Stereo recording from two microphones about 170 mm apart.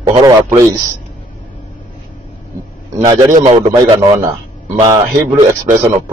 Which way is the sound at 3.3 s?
45° right (ahead or behind).